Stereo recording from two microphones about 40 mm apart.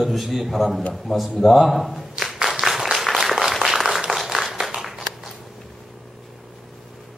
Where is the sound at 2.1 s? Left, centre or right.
Centre.